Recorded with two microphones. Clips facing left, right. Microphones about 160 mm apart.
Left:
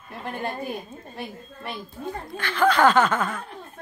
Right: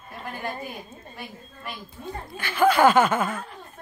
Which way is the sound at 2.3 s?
10° right (ahead or behind).